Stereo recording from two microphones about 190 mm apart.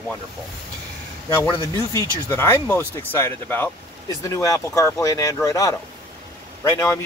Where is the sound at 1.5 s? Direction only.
15° left (ahead or behind).